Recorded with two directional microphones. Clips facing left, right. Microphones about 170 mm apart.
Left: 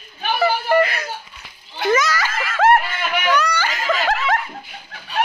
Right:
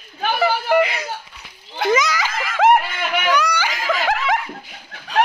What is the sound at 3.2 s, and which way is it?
Giggle, 10° right (ahead or behind).